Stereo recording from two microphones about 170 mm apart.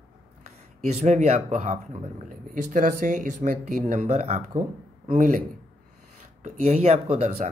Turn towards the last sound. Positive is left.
turn(degrees=-40)  # may be behind; listen again after turning